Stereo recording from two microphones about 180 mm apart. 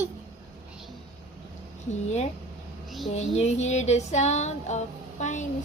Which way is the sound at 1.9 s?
40° left (ahead or behind).